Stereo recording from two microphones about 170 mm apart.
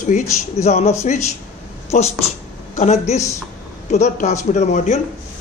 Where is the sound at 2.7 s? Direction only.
40° left (ahead or behind).